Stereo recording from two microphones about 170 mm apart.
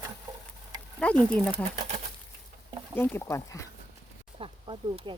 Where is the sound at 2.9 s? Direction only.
15° left (ahead or behind).